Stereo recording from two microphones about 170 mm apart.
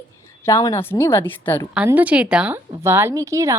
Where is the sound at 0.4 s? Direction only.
15° left (ahead or behind).